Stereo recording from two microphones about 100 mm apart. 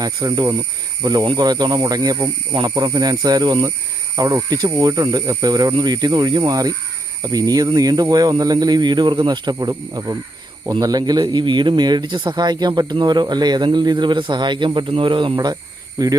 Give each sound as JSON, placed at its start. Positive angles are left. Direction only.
{"t": 0.0, "sound": "speech", "side_deg": -40}
{"t": 16.0, "sound": "speech", "side_deg": -40}